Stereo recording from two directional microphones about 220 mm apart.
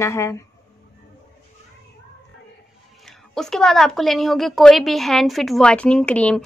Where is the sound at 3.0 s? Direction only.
Centre (ahead or behind).